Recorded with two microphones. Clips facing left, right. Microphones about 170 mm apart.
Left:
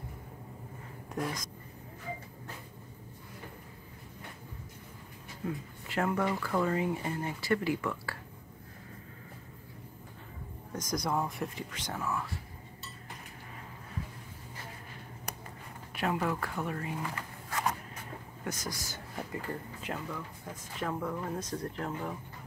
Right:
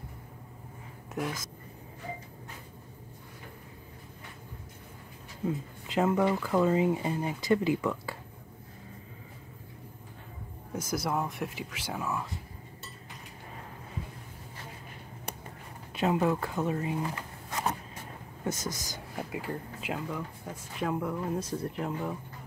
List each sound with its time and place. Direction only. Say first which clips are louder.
1.1 s speech: right 1 dB; 5° right (ahead or behind)
5.5 s speech: right 4 dB; 20° right (ahead or behind)
10.7 s speech: right 1 dB; 5° right (ahead or behind)
15.9 s speech: right 5 dB; 20° right (ahead or behind)